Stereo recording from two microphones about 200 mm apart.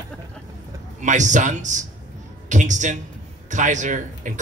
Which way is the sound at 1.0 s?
35° right (ahead or behind).